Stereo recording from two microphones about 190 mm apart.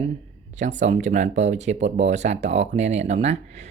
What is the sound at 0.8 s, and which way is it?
Speech, 40° right (ahead or behind).